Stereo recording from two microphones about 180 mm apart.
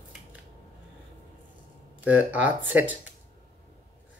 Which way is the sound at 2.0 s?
10° right (ahead or behind).